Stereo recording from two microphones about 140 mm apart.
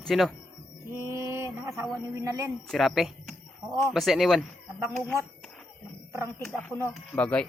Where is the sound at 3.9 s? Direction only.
Centre (ahead or behind).